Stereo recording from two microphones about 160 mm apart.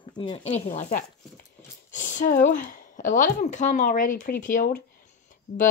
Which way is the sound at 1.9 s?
50° left (ahead or behind).